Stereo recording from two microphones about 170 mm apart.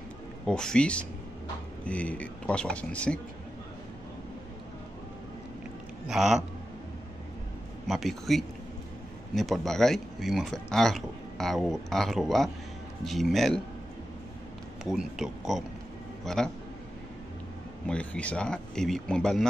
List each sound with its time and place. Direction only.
0.5 s speech: 5° left (ahead or behind)
6.0 s speech: centre (ahead or behind)
7.9 s speech: centre (ahead or behind)
14.9 s speech: 5° right (ahead or behind)
17.8 s speech: 5° left (ahead or behind)